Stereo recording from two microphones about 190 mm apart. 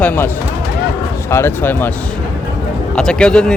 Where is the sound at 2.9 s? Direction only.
5° left (ahead or behind).